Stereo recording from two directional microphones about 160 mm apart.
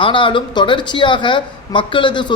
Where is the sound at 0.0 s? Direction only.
30° left (ahead or behind).